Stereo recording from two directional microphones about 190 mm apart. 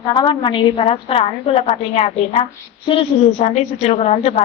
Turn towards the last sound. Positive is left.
turn(degrees=35)  # may be behind; listen again after turning